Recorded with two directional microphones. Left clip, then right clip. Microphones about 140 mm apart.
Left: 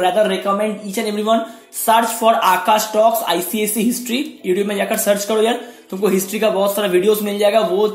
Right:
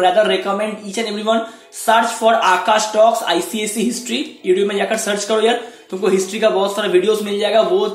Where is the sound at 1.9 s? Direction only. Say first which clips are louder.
Even; 45° left (ahead or behind).